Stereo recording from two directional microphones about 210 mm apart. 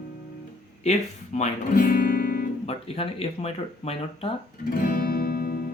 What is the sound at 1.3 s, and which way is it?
Speech, 35° left (ahead or behind).